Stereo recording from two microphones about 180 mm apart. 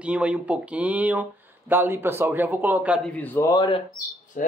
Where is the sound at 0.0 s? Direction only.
5° right (ahead or behind).